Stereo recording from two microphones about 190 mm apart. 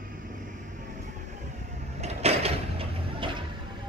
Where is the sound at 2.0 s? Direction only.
30° right (ahead or behind).